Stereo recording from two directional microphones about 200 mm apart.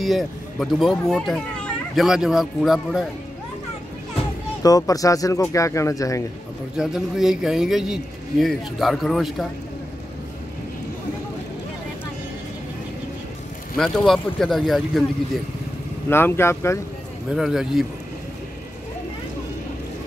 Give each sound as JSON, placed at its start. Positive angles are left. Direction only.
{"t": 0.0, "sound": "a man's voice", "side_deg": 0}
{"t": 4.6, "sound": "speech", "side_deg": 15}
{"t": 6.8, "sound": "a man's voice", "side_deg": 0}
{"t": 13.7, "sound": "a man's voice", "side_deg": 0}
{"t": 16.1, "sound": "speech", "side_deg": 10}
{"t": 17.4, "sound": "a man's voice", "side_deg": 0}